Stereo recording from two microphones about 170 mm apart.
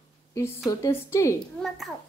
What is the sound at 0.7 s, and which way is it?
Speech, 15° left (ahead or behind).